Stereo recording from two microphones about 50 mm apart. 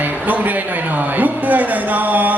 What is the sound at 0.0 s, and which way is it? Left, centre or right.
A man's voice, right.